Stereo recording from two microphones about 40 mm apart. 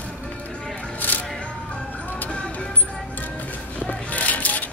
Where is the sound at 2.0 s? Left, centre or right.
Left.